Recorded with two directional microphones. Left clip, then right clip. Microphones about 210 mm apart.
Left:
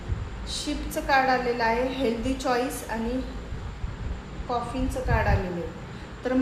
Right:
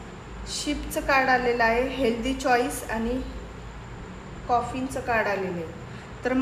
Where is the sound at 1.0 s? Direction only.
35° right (ahead or behind).